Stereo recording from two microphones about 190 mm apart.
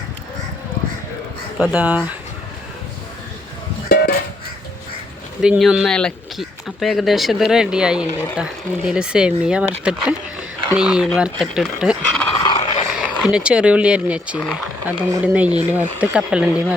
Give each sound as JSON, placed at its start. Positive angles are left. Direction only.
{"t": 1.5, "sound": "speech", "side_deg": -5}
{"t": 3.8, "sound": "a sound", "side_deg": 50}
{"t": 5.4, "sound": "speech", "side_deg": -5}
{"t": 10.8, "sound": "speech", "side_deg": -5}
{"t": 12.4, "sound": "a sound", "side_deg": 25}
{"t": 13.0, "sound": "speech", "side_deg": -5}